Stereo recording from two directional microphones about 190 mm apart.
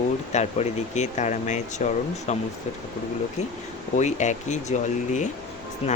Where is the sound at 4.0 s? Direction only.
40° left (ahead or behind).